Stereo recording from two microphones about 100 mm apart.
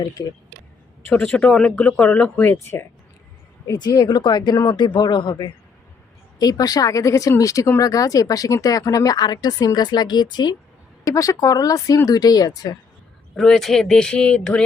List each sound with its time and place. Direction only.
0.0 s speech: 40° left (ahead or behind)
1.1 s speech: 10° left (ahead or behind)
3.7 s speech: 45° left (ahead or behind)
6.4 s speech: 40° left (ahead or behind)
11.0 s speech: 35° left (ahead or behind)
13.3 s speech: 5° left (ahead or behind)